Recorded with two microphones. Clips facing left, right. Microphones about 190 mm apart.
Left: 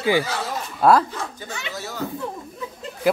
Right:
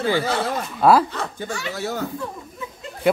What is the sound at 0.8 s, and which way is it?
Speech, centre (ahead or behind).